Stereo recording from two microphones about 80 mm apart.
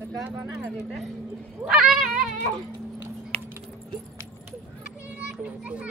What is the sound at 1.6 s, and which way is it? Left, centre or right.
Speech, centre.